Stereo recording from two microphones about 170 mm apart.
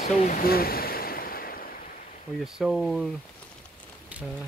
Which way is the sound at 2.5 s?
Centre (ahead or behind).